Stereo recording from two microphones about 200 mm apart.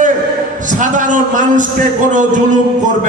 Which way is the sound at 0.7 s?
40° right (ahead or behind).